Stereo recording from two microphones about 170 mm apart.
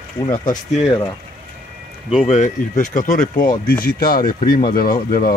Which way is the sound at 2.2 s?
45° left (ahead or behind).